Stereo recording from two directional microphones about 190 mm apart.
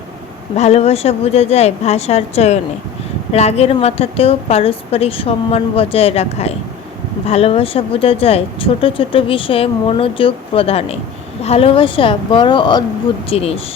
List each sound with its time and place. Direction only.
0.5 s a woman's voice: 35° left (ahead or behind)